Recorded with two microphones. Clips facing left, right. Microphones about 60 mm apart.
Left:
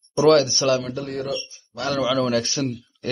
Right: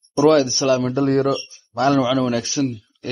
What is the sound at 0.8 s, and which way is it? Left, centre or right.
Speech, right.